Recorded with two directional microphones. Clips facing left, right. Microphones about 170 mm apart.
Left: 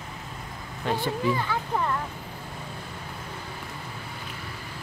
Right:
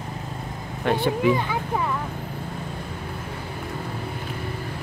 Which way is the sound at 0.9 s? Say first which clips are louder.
Right 5 dB; 65° right (ahead or behind).